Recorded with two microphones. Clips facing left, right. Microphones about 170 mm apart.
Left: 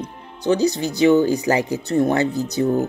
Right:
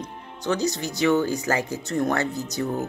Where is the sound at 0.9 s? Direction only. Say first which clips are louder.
Left 6 dB; 35° left (ahead or behind).